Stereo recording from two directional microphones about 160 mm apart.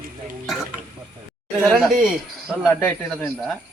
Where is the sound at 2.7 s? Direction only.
15° left (ahead or behind).